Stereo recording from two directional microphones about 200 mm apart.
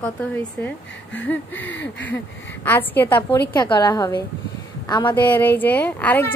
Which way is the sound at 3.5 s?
20° left (ahead or behind).